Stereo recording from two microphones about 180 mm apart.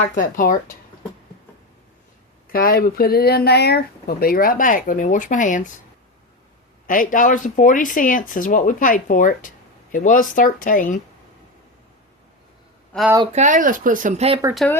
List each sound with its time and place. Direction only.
0.1 s speech: 50° left (ahead or behind)
2.5 s speech: 55° left (ahead or behind)
6.8 s speech: 50° left (ahead or behind)
12.9 s speech: 5° left (ahead or behind)
13.3 s speech: 45° right (ahead or behind)
14.6 s speech: 5° left (ahead or behind)